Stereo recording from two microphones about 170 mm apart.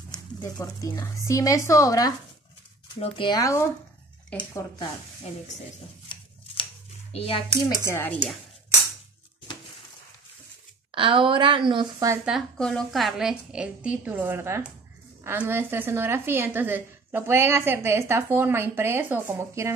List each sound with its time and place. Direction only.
0.4 s speech: 20° left (ahead or behind)
4.3 s speech: 10° left (ahead or behind)
7.1 s a child's voice: 35° left (ahead or behind)
7.8 s speech: 15° left (ahead or behind)
10.9 s a woman's voice: 30° right (ahead or behind)
12.3 s a woman's voice: centre (ahead or behind); by 19.7 s 15° right (ahead or behind)